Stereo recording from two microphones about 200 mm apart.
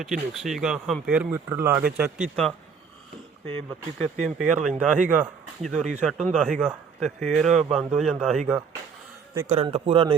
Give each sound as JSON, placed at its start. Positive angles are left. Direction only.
{"t": 0.0, "sound": "speech", "side_deg": 0}
{"t": 3.9, "sound": "speech", "side_deg": 5}
{"t": 9.5, "sound": "a man's voice", "side_deg": -30}